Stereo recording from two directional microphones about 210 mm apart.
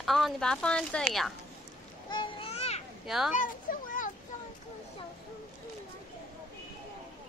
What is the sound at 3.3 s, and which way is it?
Children playing, 40° left (ahead or behind).